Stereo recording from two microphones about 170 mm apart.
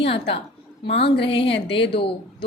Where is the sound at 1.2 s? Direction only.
30° left (ahead or behind).